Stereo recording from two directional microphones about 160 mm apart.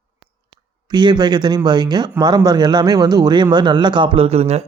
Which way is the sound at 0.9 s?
25° right (ahead or behind).